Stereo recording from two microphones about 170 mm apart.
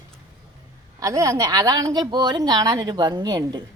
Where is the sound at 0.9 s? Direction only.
20° right (ahead or behind).